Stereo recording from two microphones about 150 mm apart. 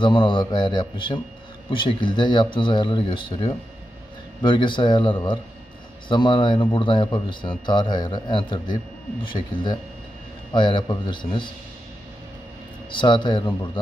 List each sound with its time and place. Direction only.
0.0 s a man's voice: 35° left (ahead or behind)
12.9 s a man's voice: 30° left (ahead or behind)